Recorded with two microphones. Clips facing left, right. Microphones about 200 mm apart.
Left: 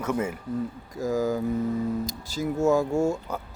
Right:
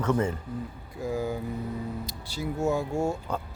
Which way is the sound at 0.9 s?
45° left (ahead or behind).